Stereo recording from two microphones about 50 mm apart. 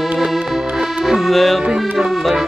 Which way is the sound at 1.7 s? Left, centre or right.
Centre.